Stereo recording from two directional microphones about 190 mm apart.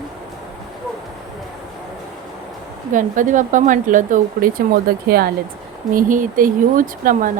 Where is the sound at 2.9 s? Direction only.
40° right (ahead or behind).